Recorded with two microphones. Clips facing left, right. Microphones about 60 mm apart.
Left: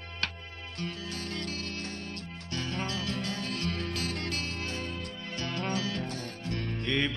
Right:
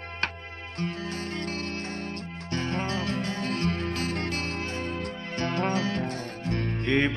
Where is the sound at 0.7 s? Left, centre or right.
Right.